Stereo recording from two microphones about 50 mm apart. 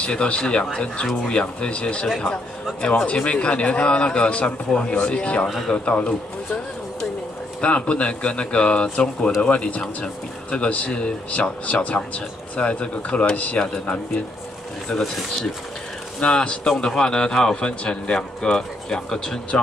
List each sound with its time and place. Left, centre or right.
0.0 s speech: centre
7.6 s speech: left
11.3 s speech: left
14.9 s speech: centre
16.2 s a man's voice: centre